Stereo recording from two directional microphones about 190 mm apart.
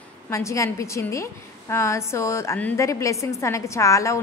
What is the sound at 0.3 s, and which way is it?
A woman's voice, 15° left (ahead or behind).